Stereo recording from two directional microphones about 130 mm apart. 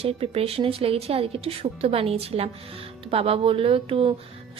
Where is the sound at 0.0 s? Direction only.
50° right (ahead or behind).